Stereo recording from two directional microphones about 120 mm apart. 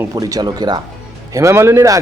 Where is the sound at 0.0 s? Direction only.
30° right (ahead or behind).